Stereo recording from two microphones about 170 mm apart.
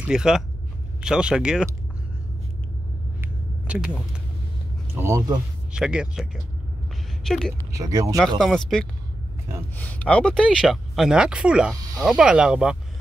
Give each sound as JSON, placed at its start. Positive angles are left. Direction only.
{"t": 0.0, "sound": "speech", "side_deg": -5}
{"t": 3.2, "sound": "vehicle", "side_deg": -10}
{"t": 4.9, "sound": "speech", "side_deg": -15}
{"t": 5.7, "sound": "speech", "side_deg": -5}
{"t": 7.7, "sound": "speech", "side_deg": -20}
{"t": 8.4, "sound": "speech", "side_deg": 0}